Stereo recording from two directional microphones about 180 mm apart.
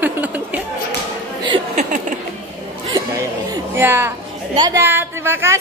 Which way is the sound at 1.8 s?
45° right (ahead or behind).